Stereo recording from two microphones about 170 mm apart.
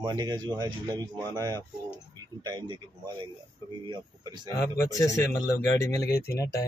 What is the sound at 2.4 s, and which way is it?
Speech, 25° right (ahead or behind).